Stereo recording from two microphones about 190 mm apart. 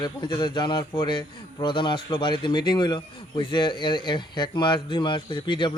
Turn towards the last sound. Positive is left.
turn(degrees=25)  # may be behind; listen again after turning